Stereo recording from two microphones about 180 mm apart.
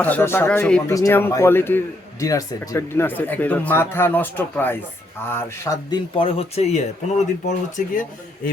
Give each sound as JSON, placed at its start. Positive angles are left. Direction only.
{"t": 0.0, "sound": "a man's voice", "side_deg": 10}
{"t": 6.1, "sound": "speech", "side_deg": 30}